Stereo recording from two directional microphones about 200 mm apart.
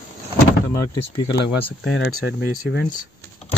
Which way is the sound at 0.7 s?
15° left (ahead or behind).